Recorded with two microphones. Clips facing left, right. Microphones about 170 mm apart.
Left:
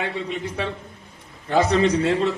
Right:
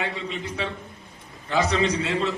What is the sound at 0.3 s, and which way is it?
A man's voice, 55° left (ahead or behind).